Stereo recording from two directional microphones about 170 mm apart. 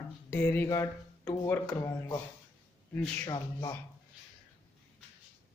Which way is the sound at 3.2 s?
20° left (ahead or behind).